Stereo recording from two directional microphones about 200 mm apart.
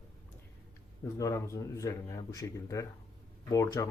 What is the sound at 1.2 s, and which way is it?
Speech, 15° left (ahead or behind).